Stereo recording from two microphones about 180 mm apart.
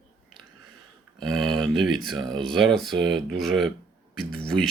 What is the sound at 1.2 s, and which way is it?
Speech, centre (ahead or behind).